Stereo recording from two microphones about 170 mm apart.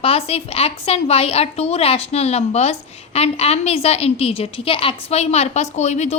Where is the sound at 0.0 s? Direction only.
35° left (ahead or behind).